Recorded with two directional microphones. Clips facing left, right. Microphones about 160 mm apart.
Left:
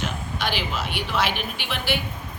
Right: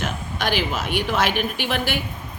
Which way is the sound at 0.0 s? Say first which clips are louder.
Right 2 dB; 50° right (ahead or behind).